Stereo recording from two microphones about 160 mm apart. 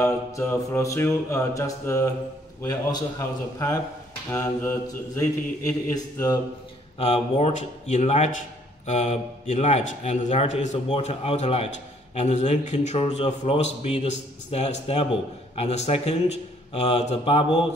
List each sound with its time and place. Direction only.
0.0 s mantra: 15° left (ahead or behind)
2.6 s a man's voice: 20° left (ahead or behind)
4.3 s mantra: 15° left (ahead or behind)
5.9 s a man's voice: 20° left (ahead or behind)
7.0 s a man's voice: 40° left (ahead or behind)